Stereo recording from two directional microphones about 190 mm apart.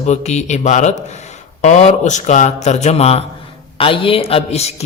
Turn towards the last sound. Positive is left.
turn(degrees=35)  # may be behind; listen again after turning